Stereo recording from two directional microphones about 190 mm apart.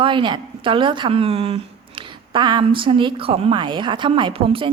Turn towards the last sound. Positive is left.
turn(degrees=-30)  # may be behind; listen again after turning